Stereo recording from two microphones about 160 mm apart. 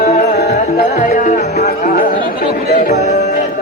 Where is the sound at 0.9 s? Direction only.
45° left (ahead or behind).